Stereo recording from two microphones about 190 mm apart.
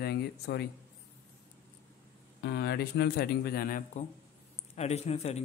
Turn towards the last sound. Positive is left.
turn(degrees=35)  # may be behind; listen again after turning